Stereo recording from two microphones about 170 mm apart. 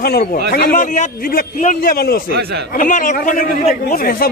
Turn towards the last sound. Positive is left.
turn(degrees=60)  # may be behind; listen again after turning